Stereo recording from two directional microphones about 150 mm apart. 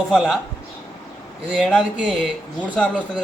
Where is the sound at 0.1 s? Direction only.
Centre (ahead or behind).